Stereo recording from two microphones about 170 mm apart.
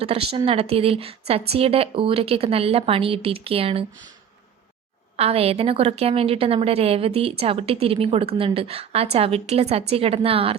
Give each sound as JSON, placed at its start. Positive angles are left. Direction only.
{"t": 0.0, "sound": "a woman's voice", "side_deg": -35}
{"t": 5.1, "sound": "a woman's voice", "side_deg": -35}